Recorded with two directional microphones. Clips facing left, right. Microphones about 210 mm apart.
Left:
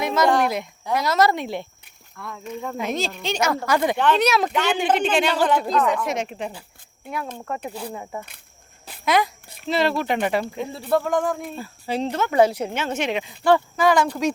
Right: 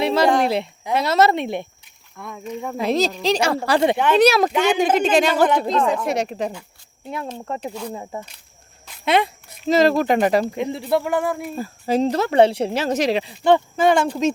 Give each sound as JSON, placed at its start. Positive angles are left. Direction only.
{"t": 0.0, "sound": "a sound", "side_deg": -30}
{"t": 0.4, "sound": "speech", "side_deg": -30}
{"t": 2.7, "sound": "speech", "side_deg": -35}
{"t": 3.9, "sound": "speech", "side_deg": -10}
{"t": 4.2, "sound": "a woman's voice", "side_deg": -35}
{"t": 5.6, "sound": "speech", "side_deg": -25}
{"t": 7.3, "sound": "speech", "side_deg": -25}
{"t": 7.7, "sound": "speech", "side_deg": 30}
{"t": 9.0, "sound": "speech", "side_deg": -25}
{"t": 9.6, "sound": "speech", "side_deg": -40}
{"t": 10.6, "sound": "speech", "side_deg": -15}
{"t": 11.5, "sound": "speech", "side_deg": -40}
{"t": 13.4, "sound": "speech", "side_deg": -25}